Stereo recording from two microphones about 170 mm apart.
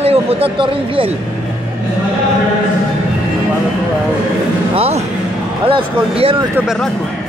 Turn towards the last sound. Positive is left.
turn(degrees=-35)  # may be behind; listen again after turning